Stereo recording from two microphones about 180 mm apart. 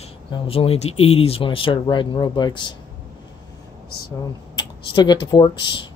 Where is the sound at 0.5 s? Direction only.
30° left (ahead or behind).